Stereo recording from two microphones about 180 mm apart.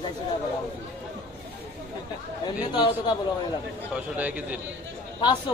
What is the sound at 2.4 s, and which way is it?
Speech, 25° left (ahead or behind).